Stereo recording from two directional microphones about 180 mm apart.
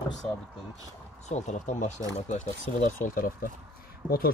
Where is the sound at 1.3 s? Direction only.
40° left (ahead or behind).